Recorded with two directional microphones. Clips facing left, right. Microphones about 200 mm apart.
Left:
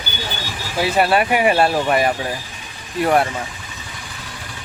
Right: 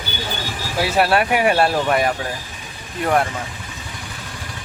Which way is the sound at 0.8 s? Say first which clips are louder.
Left 1 dB; centre (ahead or behind).